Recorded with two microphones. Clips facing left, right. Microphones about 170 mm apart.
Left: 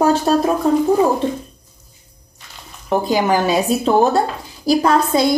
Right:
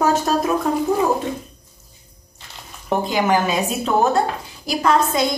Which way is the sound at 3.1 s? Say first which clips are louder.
Left 3 dB; 35° left (ahead or behind).